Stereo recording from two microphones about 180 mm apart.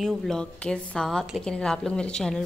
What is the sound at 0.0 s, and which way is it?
A woman's voice, 5° left (ahead or behind).